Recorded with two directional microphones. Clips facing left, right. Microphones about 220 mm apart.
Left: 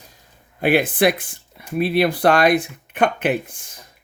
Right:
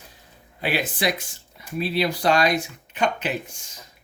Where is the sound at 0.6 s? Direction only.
50° left (ahead or behind).